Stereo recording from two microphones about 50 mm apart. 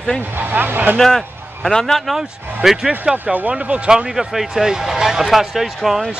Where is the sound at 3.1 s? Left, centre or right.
Right.